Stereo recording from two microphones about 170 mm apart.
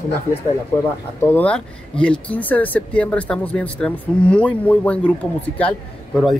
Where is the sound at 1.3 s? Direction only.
10° left (ahead or behind).